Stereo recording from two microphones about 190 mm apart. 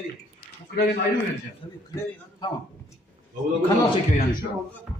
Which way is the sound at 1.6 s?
25° left (ahead or behind).